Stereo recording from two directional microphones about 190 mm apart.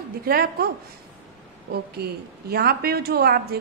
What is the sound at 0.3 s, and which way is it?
Speech, 55° right (ahead or behind).